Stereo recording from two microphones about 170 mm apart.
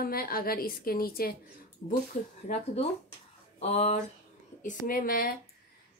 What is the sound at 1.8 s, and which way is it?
Speech, 45° left (ahead or behind).